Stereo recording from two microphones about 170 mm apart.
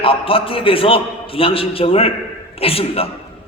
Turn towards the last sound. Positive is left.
turn(degrees=35)  # may be behind; listen again after turning